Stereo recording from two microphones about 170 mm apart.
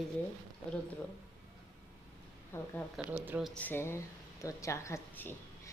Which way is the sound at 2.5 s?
15° left (ahead or behind).